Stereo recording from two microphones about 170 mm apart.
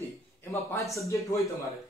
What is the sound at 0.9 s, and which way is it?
Speech, 20° left (ahead or behind).